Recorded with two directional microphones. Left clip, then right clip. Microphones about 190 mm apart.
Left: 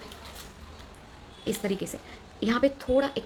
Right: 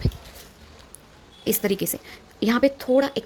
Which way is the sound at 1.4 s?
50° right (ahead or behind).